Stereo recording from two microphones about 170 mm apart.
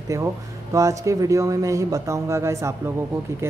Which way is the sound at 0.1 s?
20° right (ahead or behind).